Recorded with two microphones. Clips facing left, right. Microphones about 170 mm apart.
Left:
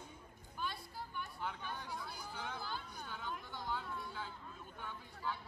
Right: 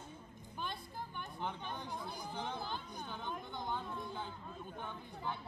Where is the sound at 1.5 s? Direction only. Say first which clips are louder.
Right 2 dB; 20° right (ahead or behind).